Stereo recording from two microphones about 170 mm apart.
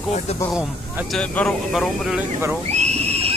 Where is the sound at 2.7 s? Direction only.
40° right (ahead or behind).